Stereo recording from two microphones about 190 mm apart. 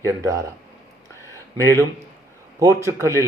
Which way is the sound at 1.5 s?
15° right (ahead or behind).